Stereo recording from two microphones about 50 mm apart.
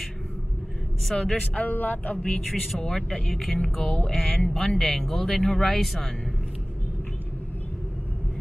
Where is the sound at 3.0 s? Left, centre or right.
Centre.